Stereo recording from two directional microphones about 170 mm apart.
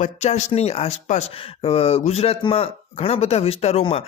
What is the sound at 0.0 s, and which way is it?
Speech, 40° left (ahead or behind).